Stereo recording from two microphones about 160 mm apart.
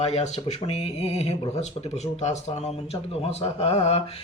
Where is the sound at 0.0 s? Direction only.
40° left (ahead or behind).